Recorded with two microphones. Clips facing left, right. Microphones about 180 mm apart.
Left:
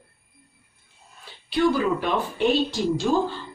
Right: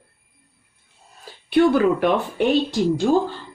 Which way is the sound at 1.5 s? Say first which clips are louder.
Right 5 dB; 60° right (ahead or behind).